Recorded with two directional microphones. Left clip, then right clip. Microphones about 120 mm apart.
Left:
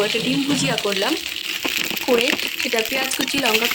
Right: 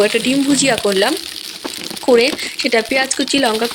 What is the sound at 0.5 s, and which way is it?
Speech, 30° right (ahead or behind).